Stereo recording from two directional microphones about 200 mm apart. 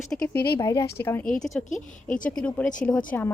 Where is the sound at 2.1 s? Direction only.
40° left (ahead or behind).